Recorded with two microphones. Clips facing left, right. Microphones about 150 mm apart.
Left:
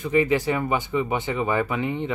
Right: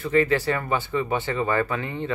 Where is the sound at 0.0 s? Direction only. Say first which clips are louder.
Even; 15° left (ahead or behind).